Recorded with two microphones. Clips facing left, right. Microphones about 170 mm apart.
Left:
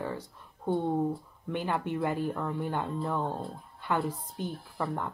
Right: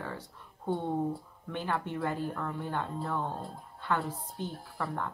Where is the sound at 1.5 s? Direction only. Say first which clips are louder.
Left 3 dB; 15° left (ahead or behind).